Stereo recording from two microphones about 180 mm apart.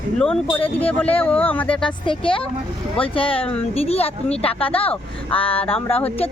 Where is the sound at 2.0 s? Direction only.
30° left (ahead or behind).